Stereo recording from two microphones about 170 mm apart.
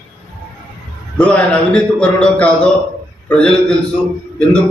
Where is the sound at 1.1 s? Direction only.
5° left (ahead or behind).